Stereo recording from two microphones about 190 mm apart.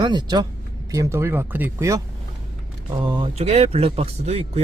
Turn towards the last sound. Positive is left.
turn(degrees=-30)  # may be behind; listen again after turning